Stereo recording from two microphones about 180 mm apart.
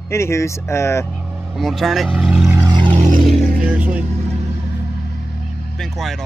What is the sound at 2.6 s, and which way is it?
Vehicle, 20° right (ahead or behind).